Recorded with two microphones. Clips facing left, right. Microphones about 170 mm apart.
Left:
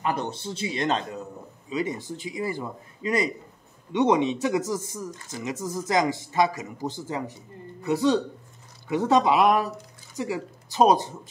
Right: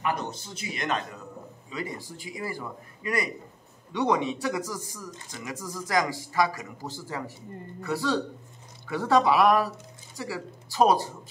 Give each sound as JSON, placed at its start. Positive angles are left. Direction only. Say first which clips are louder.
{"t": 0.0, "sound": "speech", "louder": "left 2 dB", "side_deg": 30}